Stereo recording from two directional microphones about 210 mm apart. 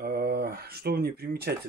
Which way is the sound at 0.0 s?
45° right (ahead or behind).